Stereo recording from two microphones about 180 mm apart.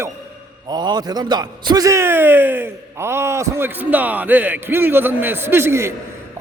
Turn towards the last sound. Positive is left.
turn(degrees=-15)  # may be behind; listen again after turning